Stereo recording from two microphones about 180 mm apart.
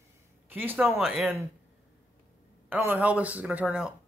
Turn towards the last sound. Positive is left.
turn(degrees=-5)  # may be behind; listen again after turning